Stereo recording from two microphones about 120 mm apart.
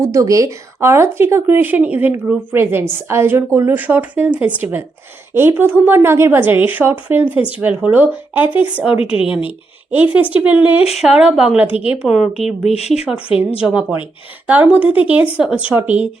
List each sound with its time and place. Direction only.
0.0 s a woman's voice: 25° right (ahead or behind); by 12.6 s centre (ahead or behind)
12.6 s speech: 60° left (ahead or behind)
13.6 s a woman's voice: 10° right (ahead or behind)